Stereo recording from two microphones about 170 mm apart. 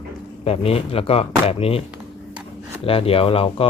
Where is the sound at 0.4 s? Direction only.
35° left (ahead or behind).